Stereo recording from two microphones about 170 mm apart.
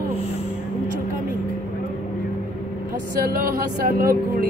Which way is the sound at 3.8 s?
60° right (ahead or behind).